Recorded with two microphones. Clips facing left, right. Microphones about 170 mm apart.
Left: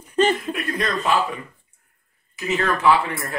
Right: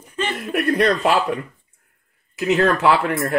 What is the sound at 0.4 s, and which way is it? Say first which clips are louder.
Speech: right 7 dB; 70° right (ahead or behind).